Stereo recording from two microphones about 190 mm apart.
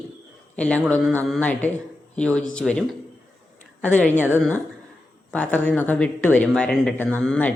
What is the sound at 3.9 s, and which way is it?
Speech, 10° left (ahead or behind).